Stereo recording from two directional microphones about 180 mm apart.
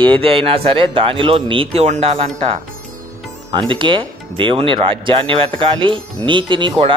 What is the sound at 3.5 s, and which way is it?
Speech, 25° right (ahead or behind).